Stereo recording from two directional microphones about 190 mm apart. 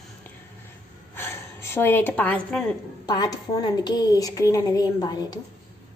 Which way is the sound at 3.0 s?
20° left (ahead or behind).